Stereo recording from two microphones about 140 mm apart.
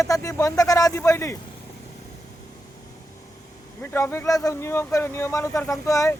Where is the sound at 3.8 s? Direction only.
15° left (ahead or behind).